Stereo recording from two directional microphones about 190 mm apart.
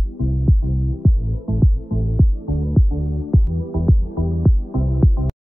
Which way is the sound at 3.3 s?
Centre (ahead or behind).